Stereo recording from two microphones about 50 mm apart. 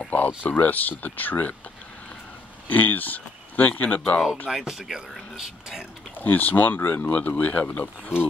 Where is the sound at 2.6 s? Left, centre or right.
Left.